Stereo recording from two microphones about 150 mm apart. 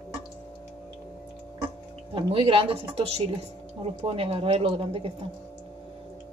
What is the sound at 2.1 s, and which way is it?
Speech, 35° right (ahead or behind).